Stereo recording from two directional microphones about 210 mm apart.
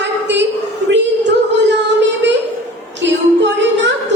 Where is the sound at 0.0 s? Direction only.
55° right (ahead or behind).